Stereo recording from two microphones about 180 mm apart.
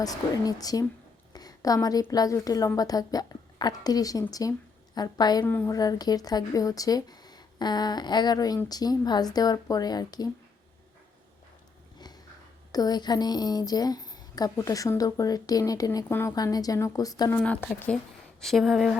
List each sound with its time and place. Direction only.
0.0 s speech: 20° left (ahead or behind)
11.9 s sniff: 20° left (ahead or behind)
12.7 s speech: 20° left (ahead or behind)
17.7 s speech: 5° left (ahead or behind)